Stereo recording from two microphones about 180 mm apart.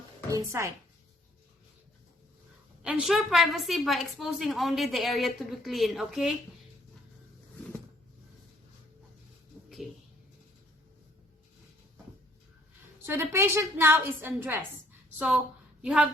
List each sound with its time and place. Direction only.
0.3 s a woman's voice: 15° right (ahead or behind)
2.8 s a woman's voice: centre (ahead or behind)
13.1 s a woman's voice: 15° right (ahead or behind)
15.8 s a woman's voice: 5° right (ahead or behind)